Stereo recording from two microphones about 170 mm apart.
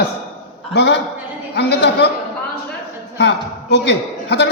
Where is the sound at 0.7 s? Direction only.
90° left.